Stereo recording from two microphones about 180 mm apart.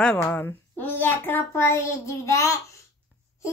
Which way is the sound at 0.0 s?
5° left (ahead or behind).